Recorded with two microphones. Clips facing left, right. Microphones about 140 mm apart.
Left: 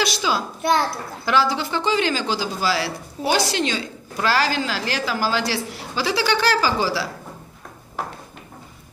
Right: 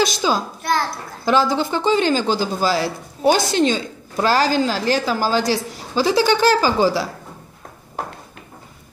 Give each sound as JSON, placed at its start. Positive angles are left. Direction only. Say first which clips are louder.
{"t": 0.0, "sound": "a child's voice", "louder": "right 3 dB", "side_deg": -40}